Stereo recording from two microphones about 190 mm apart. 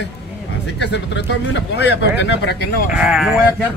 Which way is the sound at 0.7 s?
65° left (ahead or behind).